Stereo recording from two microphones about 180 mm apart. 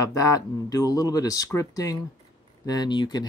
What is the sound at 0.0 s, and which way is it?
Speech, 20° left (ahead or behind).